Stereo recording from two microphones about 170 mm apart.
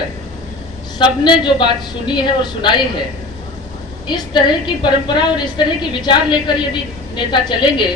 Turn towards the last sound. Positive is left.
turn(degrees=25)  # may be behind; listen again after turning